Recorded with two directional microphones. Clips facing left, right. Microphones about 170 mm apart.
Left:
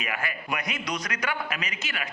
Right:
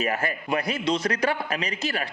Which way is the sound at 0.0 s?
40° right (ahead or behind).